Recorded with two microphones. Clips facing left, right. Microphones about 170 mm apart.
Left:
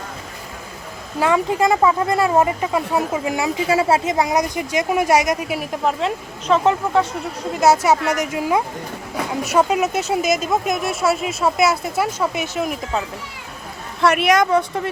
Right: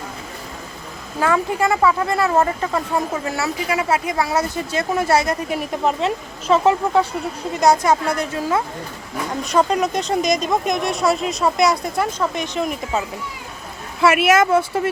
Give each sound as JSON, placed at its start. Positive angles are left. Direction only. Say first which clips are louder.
{"t": 1.3, "sound": "speech", "louder": "left 2 dB", "side_deg": 20}
{"t": 3.7, "sound": "speech", "louder": "left 4 dB", "side_deg": 30}